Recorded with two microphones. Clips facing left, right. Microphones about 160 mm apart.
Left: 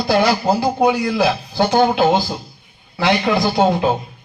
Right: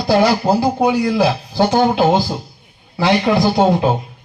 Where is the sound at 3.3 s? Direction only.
25° right (ahead or behind).